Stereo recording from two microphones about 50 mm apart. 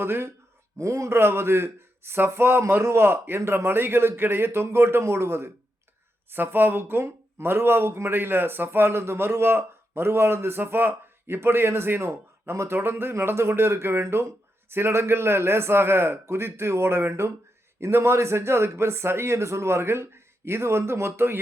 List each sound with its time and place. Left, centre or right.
0.0 s speech: right
0.8 s a man's voice: right
6.3 s a man's voice: right